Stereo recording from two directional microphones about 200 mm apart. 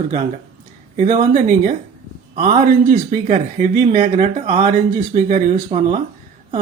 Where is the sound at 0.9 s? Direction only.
40° right (ahead or behind).